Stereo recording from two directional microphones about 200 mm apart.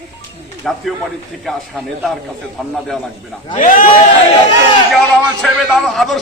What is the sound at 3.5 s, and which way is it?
Speech, 40° left (ahead or behind).